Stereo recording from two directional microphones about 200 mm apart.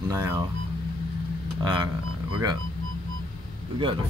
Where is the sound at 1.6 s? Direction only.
25° right (ahead or behind).